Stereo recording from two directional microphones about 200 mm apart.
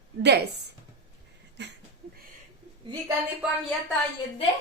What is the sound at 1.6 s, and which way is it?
Speech, 55° right (ahead or behind).